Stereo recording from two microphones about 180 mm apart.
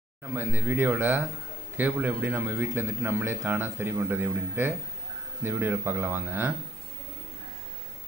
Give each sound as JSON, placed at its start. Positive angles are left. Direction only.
{"t": 0.3, "sound": "a man's voice", "side_deg": -10}